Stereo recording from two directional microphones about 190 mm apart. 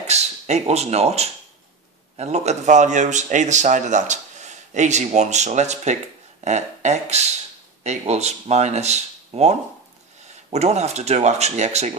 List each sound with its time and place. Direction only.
0.0 s a man's voice: 35° right (ahead or behind)